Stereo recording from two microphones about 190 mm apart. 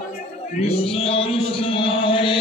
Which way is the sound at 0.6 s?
30° left (ahead or behind).